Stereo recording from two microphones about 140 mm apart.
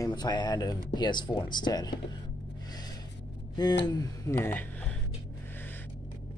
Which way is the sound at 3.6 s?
30° left (ahead or behind).